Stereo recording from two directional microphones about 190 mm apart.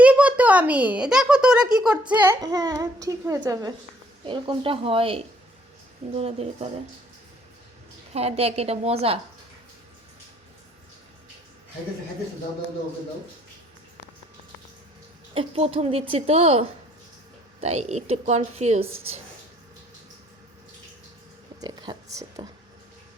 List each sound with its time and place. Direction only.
0.0 s a child's voice: 5° right (ahead or behind); by 6.7 s 30° right (ahead or behind)
8.1 s speech: 35° right (ahead or behind)
15.4 s speech: 30° right (ahead or behind)
21.6 s speech: 20° right (ahead or behind)